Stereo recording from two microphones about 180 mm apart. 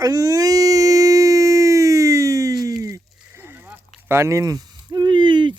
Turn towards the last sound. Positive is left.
turn(degrees=-25)  # may be behind; listen again after turning